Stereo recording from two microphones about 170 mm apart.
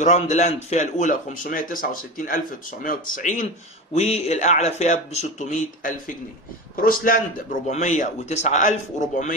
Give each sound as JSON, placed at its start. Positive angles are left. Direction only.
{"t": 0.0, "sound": "speech", "side_deg": 45}
{"t": 6.8, "sound": "a man's voice", "side_deg": 55}
{"t": 7.6, "sound": "speech", "side_deg": 45}